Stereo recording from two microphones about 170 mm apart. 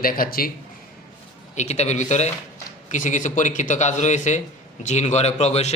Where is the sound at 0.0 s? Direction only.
60° left (ahead or behind).